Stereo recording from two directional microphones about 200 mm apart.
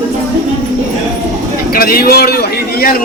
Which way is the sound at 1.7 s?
50° left (ahead or behind).